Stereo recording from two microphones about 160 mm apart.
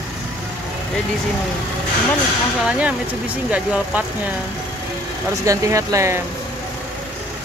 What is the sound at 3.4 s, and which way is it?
Speech, 10° right (ahead or behind).